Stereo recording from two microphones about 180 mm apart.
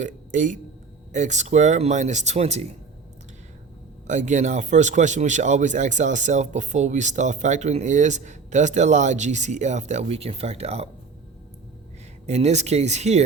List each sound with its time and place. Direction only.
0.0 s a man's voice: 45° right (ahead or behind)
4.0 s speech: 40° right (ahead or behind)
12.2 s speech: 40° right (ahead or behind)